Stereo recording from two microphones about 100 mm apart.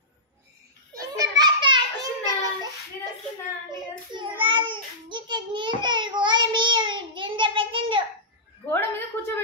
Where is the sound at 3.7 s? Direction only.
50° right (ahead or behind).